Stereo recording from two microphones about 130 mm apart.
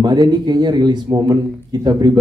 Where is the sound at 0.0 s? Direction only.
30° right (ahead or behind).